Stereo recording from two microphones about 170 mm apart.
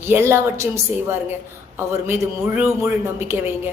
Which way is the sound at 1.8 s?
15° right (ahead or behind).